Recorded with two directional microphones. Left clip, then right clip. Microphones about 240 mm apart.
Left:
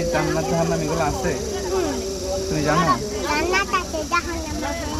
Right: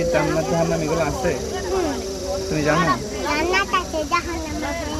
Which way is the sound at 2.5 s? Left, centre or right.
Left.